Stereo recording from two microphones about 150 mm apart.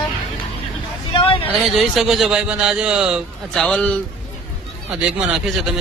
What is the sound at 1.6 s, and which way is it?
A man's voice, centre (ahead or behind).